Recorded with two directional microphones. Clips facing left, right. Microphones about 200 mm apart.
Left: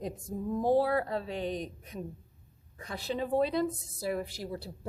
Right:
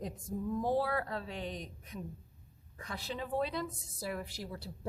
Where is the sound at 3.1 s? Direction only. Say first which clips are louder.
Left 7 dB; 30° left (ahead or behind).